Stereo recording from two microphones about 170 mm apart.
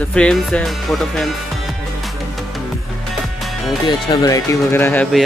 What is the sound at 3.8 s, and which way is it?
Speech, 25° left (ahead or behind).